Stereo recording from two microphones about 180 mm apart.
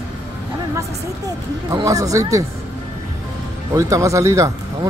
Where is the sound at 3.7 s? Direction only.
15° right (ahead or behind).